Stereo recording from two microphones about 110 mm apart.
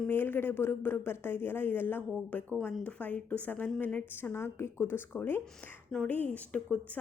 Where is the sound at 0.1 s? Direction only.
20° left (ahead or behind).